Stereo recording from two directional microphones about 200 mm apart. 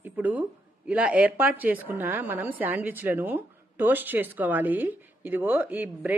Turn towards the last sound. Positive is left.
turn(degrees=-10)  # may be behind; listen again after turning